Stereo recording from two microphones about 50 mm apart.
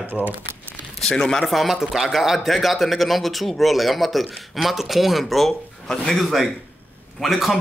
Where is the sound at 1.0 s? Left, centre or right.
Centre.